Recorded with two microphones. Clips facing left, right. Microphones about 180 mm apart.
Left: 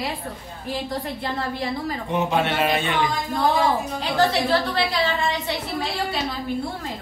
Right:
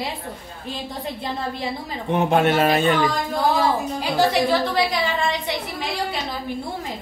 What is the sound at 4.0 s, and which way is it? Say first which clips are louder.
A woman's voice: right 2 dB; 10° right (ahead or behind).